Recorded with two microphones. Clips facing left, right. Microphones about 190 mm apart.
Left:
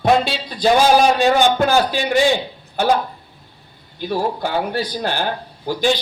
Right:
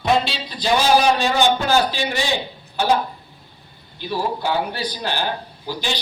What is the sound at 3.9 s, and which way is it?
A man's voice, 50° left (ahead or behind).